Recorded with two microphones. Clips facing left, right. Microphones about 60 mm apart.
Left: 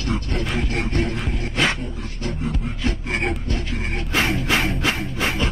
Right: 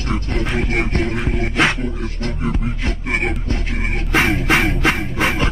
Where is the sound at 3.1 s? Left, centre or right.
Centre.